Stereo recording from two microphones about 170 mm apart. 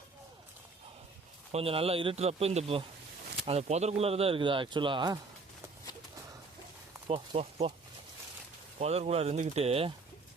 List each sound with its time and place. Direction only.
1.5 s speech: 35° right (ahead or behind)
7.1 s speech: 35° right (ahead or behind)
8.8 s speech: 40° right (ahead or behind)